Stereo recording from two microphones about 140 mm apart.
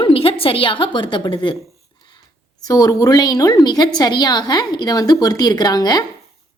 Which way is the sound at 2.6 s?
25° left (ahead or behind).